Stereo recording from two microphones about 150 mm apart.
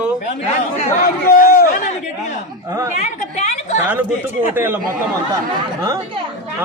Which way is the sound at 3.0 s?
50° left (ahead or behind).